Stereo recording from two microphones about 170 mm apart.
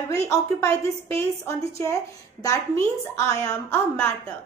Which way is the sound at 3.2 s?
15° left (ahead or behind).